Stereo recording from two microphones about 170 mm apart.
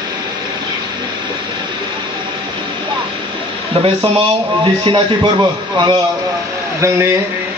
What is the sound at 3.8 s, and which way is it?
Speech, 30° right (ahead or behind).